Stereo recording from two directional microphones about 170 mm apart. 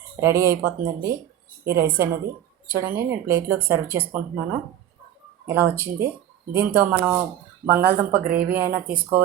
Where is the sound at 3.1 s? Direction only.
15° right (ahead or behind).